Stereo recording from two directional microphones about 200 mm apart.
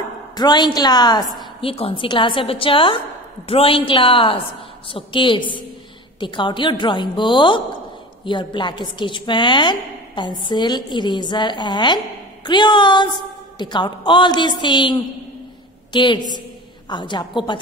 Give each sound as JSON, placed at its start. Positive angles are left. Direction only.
{"t": 0.3, "sound": "a woman's voice", "side_deg": 20}